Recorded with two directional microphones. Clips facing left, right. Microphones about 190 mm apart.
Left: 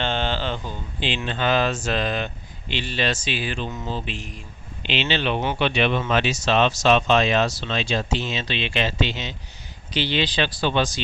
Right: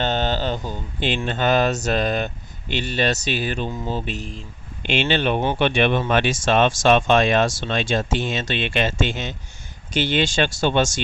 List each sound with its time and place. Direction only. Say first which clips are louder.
0.0 s speech: right 3 dB; 40° right (ahead or behind)